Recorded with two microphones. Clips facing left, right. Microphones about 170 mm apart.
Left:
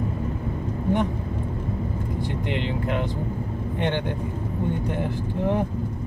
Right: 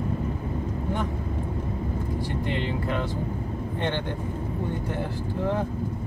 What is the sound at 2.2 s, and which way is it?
Speech, 20° left (ahead or behind).